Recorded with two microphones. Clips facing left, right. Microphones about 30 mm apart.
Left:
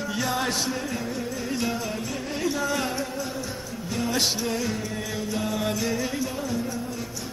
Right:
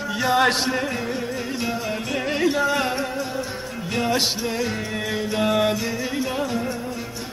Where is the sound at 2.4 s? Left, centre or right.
Right.